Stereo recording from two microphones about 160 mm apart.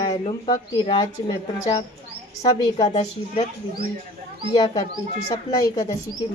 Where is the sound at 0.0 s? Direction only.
30° left (ahead or behind).